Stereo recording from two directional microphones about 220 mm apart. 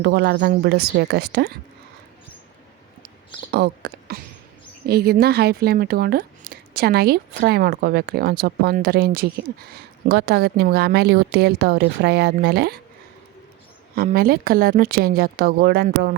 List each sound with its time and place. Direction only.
0.0 s speech: 50° right (ahead or behind)
3.5 s speech: 50° right (ahead or behind)
13.9 s speech: 40° right (ahead or behind)